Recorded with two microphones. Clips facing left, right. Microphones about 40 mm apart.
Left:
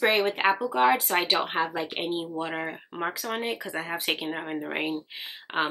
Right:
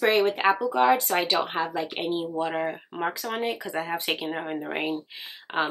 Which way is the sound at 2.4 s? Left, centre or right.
Centre.